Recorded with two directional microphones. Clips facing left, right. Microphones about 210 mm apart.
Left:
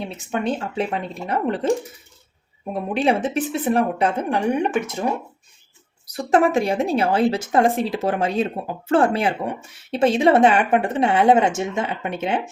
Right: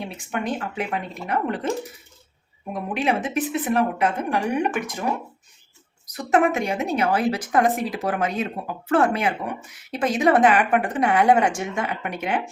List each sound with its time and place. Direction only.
0.0 s a woman's voice: 25° left (ahead or behind)
2.7 s a woman's voice: 30° left (ahead or behind)
6.1 s a woman's voice: 30° left (ahead or behind)